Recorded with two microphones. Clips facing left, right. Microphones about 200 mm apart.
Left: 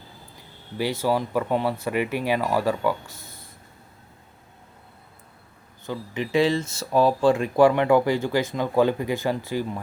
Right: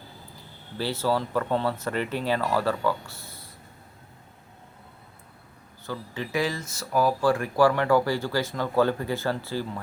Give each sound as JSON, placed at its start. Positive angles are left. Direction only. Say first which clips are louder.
{"t": 0.8, "sound": "speech", "louder": "left 2 dB", "side_deg": 15}
{"t": 5.8, "sound": "speech", "louder": "left 4 dB", "side_deg": 20}